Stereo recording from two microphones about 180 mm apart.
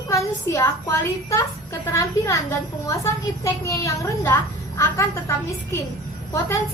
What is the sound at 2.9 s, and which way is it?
A woman's voice, 15° left (ahead or behind).